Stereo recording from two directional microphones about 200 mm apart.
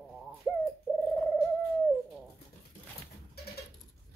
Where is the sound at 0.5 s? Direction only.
5° right (ahead or behind).